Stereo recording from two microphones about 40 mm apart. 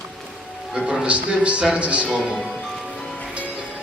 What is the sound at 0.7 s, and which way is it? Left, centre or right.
Speech, centre.